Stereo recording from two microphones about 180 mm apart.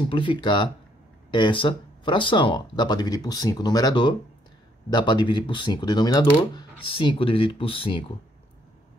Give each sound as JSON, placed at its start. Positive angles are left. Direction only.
{"t": 0.1, "sound": "speech", "side_deg": 30}